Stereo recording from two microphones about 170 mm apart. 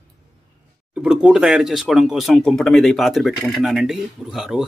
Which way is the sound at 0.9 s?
5° right (ahead or behind).